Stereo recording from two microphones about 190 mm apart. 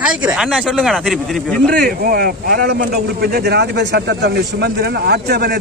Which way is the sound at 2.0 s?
50° right (ahead or behind).